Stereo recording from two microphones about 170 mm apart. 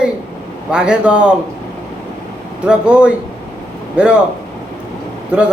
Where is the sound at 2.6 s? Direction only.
5° right (ahead or behind).